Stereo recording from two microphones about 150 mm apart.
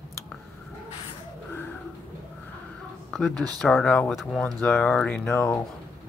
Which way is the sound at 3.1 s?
5° left (ahead or behind).